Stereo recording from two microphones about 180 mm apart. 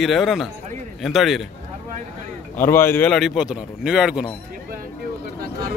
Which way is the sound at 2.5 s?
15° left (ahead or behind).